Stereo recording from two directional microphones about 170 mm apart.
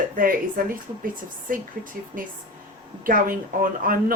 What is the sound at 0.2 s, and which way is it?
A woman's voice, 55° right (ahead or behind).